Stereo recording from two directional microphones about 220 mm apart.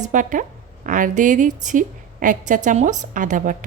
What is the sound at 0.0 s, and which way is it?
A woman's voice, 35° right (ahead or behind).